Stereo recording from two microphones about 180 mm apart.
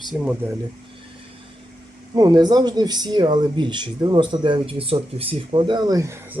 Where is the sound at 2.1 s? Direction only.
25° right (ahead or behind).